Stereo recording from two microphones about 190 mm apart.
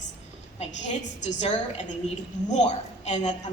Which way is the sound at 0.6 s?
40° left (ahead or behind).